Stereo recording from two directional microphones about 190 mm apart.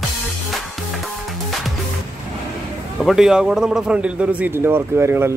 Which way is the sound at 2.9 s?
Centre (ahead or behind).